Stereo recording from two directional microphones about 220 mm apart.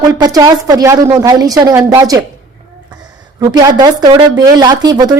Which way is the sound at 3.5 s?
20° right (ahead or behind).